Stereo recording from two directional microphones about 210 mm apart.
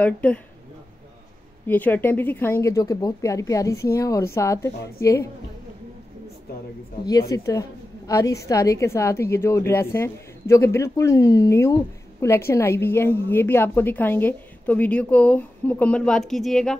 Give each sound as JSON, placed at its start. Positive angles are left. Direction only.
{"t": 0.0, "sound": "a woman's voice", "side_deg": 5}
{"t": 1.7, "sound": "a woman's voice", "side_deg": 10}
{"t": 7.1, "sound": "a woman's voice", "side_deg": 15}